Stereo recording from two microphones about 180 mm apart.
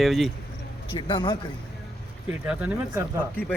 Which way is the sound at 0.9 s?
25° left (ahead or behind).